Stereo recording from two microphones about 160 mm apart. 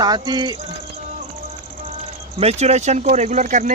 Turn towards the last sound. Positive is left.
turn(degrees=-50)  # may be behind; listen again after turning